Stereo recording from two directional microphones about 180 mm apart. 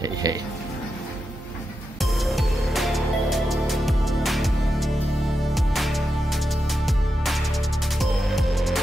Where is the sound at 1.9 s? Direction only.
Centre (ahead or behind).